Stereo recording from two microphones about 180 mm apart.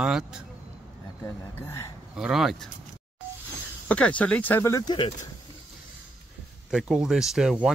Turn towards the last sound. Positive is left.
turn(degrees=-5)  # may be behind; listen again after turning